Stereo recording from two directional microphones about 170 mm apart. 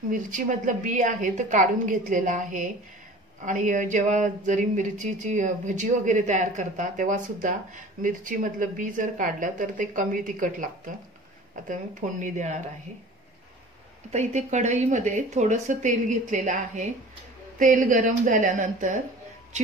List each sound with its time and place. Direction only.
0.1 s speech: 50° right (ahead or behind)
14.1 s speech: 45° right (ahead or behind)